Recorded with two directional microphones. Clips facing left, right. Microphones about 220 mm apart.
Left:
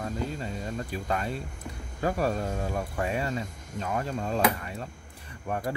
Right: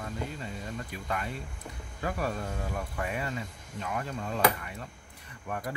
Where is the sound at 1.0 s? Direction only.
30° left (ahead or behind).